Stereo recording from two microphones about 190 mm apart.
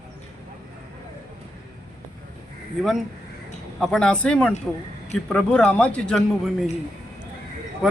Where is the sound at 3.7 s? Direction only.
Centre (ahead or behind).